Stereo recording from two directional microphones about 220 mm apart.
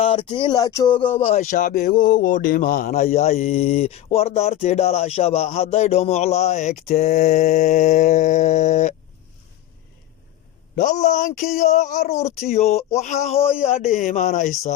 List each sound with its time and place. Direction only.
0.0 s a sound: 25° left (ahead or behind)
1.2 s speech: 30° left (ahead or behind)
10.8 s speech: 35° left (ahead or behind)